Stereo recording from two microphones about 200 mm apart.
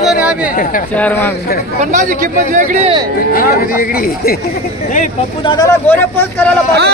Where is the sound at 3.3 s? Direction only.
45° left (ahead or behind).